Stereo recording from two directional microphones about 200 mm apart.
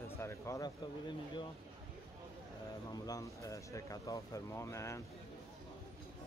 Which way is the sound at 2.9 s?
15° left (ahead or behind).